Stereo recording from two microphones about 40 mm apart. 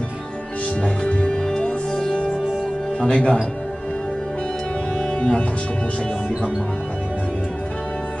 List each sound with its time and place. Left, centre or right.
0.8 s music: left
3.0 s speech: centre
4.9 s music: centre